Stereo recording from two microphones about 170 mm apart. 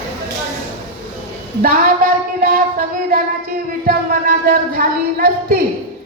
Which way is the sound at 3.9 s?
60° right (ahead or behind).